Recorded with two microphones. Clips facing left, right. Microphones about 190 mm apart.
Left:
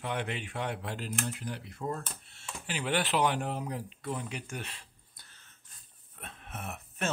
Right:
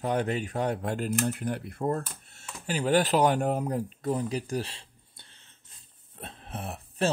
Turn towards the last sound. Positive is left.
turn(degrees=-30)  # may be behind; listen again after turning